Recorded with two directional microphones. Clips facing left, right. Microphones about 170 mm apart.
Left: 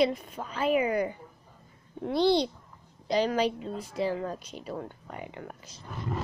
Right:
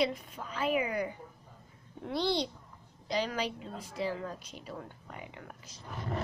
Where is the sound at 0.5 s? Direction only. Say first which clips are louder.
Left 5 dB; 40° left (ahead or behind).